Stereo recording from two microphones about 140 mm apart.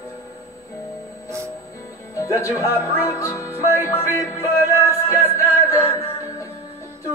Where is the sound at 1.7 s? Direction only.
20° left (ahead or behind).